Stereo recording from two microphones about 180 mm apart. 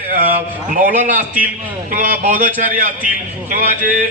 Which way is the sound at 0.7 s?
50° right (ahead or behind).